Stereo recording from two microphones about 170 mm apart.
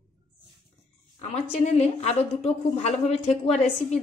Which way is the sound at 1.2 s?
40° left (ahead or behind).